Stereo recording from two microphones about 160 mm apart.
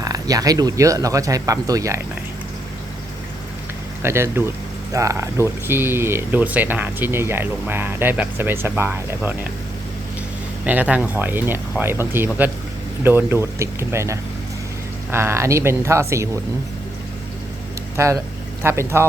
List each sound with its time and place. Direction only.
0.0 s speech: 20° right (ahead or behind)
4.0 s speech: 15° right (ahead or behind)
10.7 s speech: 10° right (ahead or behind)
17.9 s speech: 20° right (ahead or behind)